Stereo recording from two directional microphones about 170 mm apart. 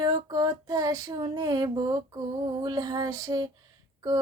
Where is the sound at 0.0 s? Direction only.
25° right (ahead or behind).